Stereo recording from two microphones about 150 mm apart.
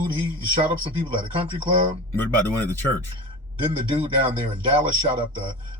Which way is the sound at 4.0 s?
35° right (ahead or behind).